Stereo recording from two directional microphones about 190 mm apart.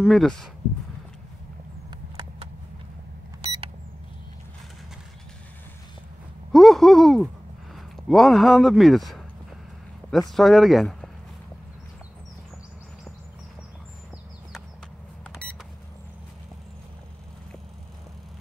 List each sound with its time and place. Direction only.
0.0 s speech: centre (ahead or behind)
6.5 s speech: centre (ahead or behind)